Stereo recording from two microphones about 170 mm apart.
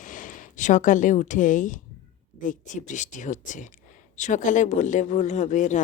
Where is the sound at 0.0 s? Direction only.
50° left (ahead or behind).